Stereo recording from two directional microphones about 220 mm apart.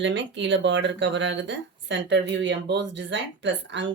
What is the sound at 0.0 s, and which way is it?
Speech, 55° right (ahead or behind).